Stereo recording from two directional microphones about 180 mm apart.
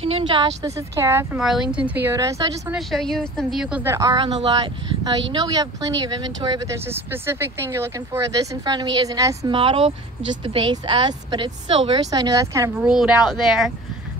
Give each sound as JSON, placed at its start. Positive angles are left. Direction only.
{"t": 0.0, "sound": "a woman's voice", "side_deg": -30}
{"t": 1.4, "sound": "a woman's voice", "side_deg": 0}
{"t": 2.7, "sound": "a woman's voice", "side_deg": 0}
{"t": 3.8, "sound": "speech", "side_deg": -20}
{"t": 9.6, "sound": "speech", "side_deg": -30}
{"t": 12.7, "sound": "a woman's voice", "side_deg": -5}